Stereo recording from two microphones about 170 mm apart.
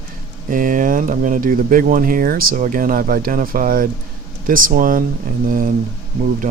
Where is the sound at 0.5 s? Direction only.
55° right (ahead or behind).